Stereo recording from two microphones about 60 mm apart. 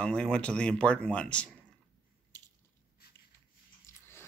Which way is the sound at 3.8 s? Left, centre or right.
Left.